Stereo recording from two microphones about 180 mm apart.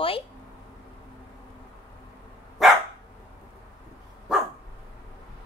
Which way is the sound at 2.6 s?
Centre (ahead or behind).